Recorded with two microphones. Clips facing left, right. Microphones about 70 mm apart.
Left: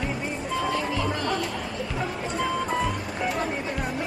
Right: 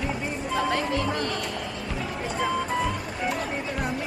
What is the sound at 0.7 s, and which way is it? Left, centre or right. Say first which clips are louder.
Music: right 1 dB; right.